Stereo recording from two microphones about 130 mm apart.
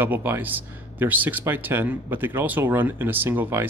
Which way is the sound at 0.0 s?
15° right (ahead or behind).